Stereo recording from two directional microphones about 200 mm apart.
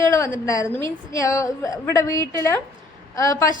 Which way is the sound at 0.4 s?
15° left (ahead or behind).